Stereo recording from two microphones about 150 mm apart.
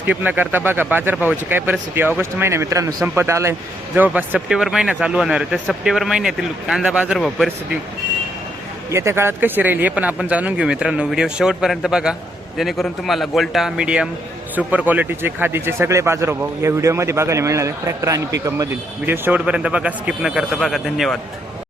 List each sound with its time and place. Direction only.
0.0 s a man's voice: 10° right (ahead or behind)
8.9 s a man's voice: 20° right (ahead or behind); by 21.2 s centre (ahead or behind)